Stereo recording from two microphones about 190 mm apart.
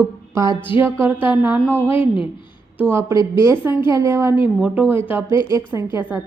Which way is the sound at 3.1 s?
25° left (ahead or behind).